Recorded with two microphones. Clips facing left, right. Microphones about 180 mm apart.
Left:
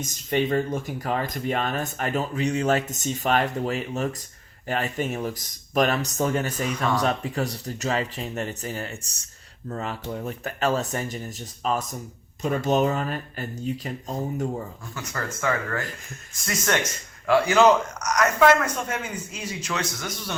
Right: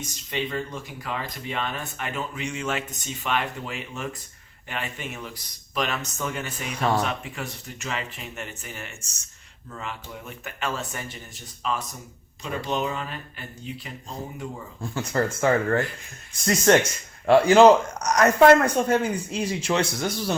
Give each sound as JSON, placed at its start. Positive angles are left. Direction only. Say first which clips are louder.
{"t": 0.0, "sound": "speech", "louder": "left 6 dB", "side_deg": 45}
{"t": 14.8, "sound": "speech", "louder": "right 8 dB", "side_deg": -30}